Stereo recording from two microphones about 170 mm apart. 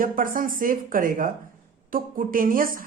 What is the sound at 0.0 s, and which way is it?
A woman's voice, 55° right (ahead or behind).